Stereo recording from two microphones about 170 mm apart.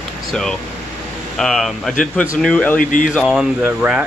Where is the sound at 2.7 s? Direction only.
50° left (ahead or behind).